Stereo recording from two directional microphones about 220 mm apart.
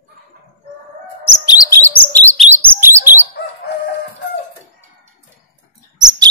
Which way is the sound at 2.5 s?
10° right (ahead or behind).